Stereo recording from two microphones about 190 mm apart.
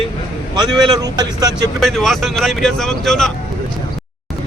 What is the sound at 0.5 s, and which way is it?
Speech, 20° right (ahead or behind).